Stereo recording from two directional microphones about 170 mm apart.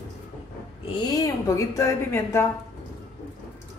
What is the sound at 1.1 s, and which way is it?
A woman's voice, 20° left (ahead or behind).